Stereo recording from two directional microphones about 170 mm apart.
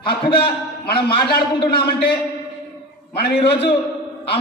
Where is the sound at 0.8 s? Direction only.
65° left (ahead or behind).